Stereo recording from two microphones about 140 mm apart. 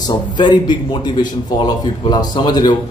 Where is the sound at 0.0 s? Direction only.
30° left (ahead or behind).